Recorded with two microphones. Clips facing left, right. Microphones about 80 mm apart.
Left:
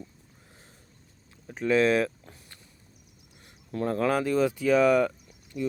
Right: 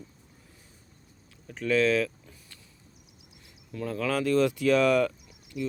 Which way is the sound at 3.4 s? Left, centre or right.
Left.